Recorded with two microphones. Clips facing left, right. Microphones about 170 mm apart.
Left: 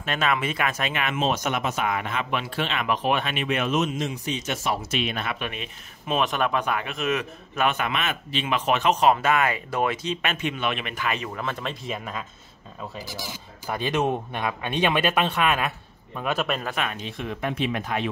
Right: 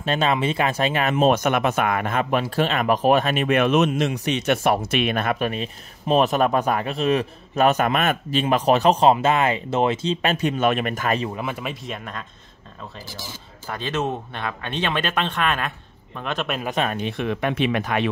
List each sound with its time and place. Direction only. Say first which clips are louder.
0.0 s speech: right 4 dB; 30° right (ahead or behind)
1.2 s speech: right 7 dB; 55° right (ahead or behind)
11.2 s speech: right 3 dB; 15° right (ahead or behind); by 16.6 s centre (ahead or behind)
16.9 s speech: right 7 dB; 65° right (ahead or behind)